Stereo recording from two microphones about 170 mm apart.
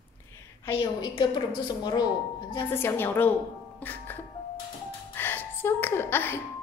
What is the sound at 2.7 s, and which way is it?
Speech, 15° left (ahead or behind).